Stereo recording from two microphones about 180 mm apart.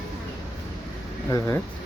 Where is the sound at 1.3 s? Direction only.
15° left (ahead or behind).